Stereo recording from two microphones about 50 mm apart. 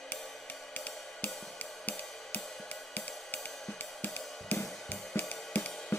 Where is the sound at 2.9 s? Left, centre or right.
Left.